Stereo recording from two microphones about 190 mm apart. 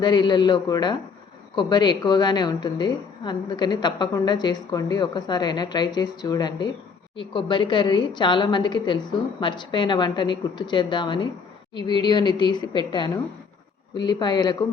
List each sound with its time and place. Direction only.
0.0 s a woman's voice: 25° left (ahead or behind)